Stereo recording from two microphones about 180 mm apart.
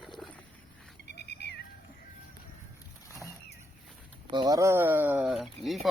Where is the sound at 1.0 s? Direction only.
70° left (ahead or behind).